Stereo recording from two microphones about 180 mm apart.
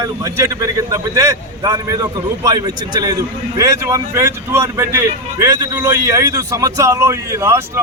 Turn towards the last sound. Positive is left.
turn(degrees=-15)  # may be behind; listen again after turning